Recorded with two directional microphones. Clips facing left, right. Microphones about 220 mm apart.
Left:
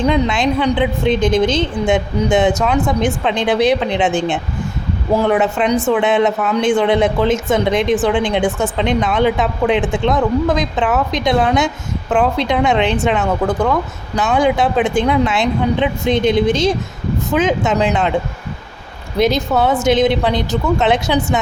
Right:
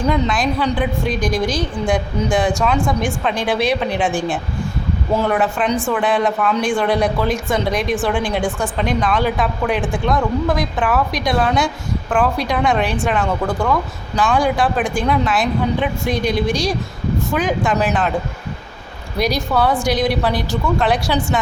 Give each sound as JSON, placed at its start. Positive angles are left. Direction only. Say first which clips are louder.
{"t": 0.1, "sound": "a woman's voice", "louder": "left 3 dB", "side_deg": 25}
{"t": 19.2, "sound": "a woman's voice", "louder": "left 3 dB", "side_deg": 20}